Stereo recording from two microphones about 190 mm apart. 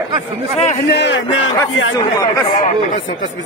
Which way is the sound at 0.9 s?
70° left (ahead or behind).